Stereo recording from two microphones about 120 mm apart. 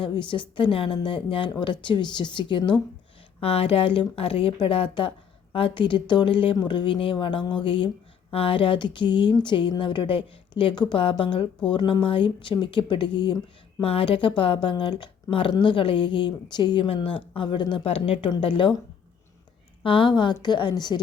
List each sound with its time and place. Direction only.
0.0 s a woman's voice: 45° left (ahead or behind)
3.4 s a woman's voice: 55° left (ahead or behind)
13.8 s speech: 55° left (ahead or behind)
19.8 s a woman's voice: 45° left (ahead or behind)